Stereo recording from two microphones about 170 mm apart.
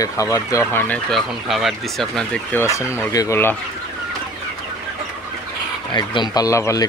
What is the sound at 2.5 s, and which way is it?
Speech, 15° left (ahead or behind).